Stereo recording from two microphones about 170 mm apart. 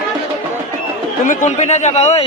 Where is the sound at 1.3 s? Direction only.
45° left (ahead or behind).